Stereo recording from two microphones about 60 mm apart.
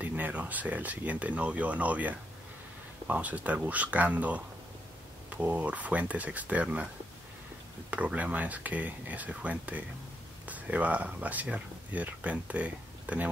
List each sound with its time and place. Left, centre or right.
0.0 s speech: right
7.9 s speech: right